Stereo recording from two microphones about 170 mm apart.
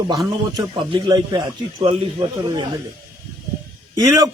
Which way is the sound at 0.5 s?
25° right (ahead or behind).